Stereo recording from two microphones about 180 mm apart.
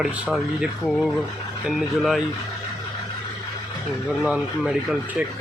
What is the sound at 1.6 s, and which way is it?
Speech, centre (ahead or behind).